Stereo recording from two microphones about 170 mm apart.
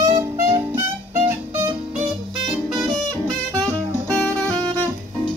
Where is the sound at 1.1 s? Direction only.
15° right (ahead or behind).